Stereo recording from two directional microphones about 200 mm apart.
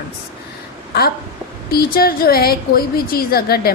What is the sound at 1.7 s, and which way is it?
A woman's voice, 50° left (ahead or behind).